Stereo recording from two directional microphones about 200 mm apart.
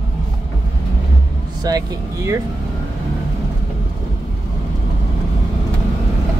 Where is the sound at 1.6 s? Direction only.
20° right (ahead or behind).